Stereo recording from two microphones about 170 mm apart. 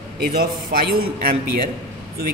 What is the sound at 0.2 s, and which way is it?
Speech, 65° right (ahead or behind).